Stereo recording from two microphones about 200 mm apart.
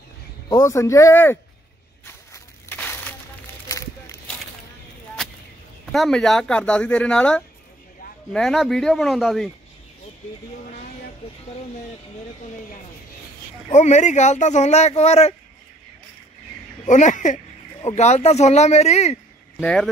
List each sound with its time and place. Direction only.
0.5 s speech: 15° left (ahead or behind)
2.0 s a sound: 10° left (ahead or behind)
5.9 s speech: centre (ahead or behind)
13.7 s speech: 35° left (ahead or behind)
16.8 s speech: 40° left (ahead or behind)
19.6 s speech: 5° left (ahead or behind)